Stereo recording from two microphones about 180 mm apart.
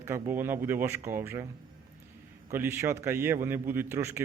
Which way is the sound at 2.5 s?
15° right (ahead or behind).